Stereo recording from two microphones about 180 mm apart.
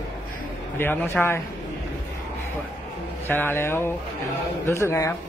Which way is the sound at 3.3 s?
10° left (ahead or behind).